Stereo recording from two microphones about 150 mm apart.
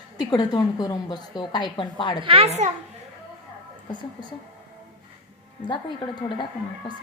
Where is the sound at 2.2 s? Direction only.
40° right (ahead or behind).